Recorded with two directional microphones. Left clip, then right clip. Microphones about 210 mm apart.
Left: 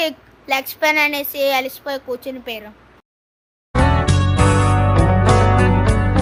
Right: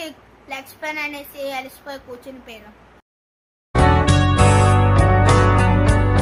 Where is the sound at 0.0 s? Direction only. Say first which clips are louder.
Left 12 dB; 45° left (ahead or behind).